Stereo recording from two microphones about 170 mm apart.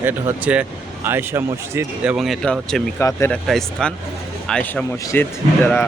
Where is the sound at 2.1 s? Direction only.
Centre (ahead or behind).